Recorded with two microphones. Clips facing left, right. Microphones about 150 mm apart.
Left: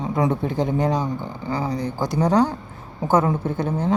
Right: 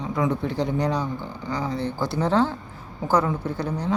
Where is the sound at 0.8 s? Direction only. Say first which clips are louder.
Left 3 dB; 20° left (ahead or behind).